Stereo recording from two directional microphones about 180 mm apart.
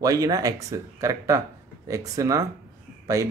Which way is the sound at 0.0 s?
20° right (ahead or behind).